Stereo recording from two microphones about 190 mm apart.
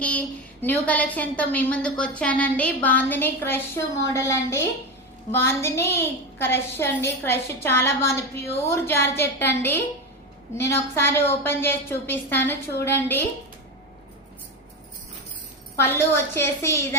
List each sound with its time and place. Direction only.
0.0 s a woman's voice: 5° left (ahead or behind)
15.7 s a woman's voice: 15° left (ahead or behind)